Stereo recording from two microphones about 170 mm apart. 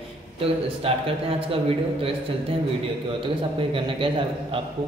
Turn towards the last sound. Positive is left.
turn(degrees=-30)  # may be behind; listen again after turning